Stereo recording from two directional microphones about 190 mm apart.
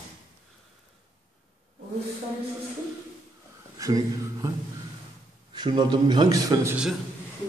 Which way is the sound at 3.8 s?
20° right (ahead or behind).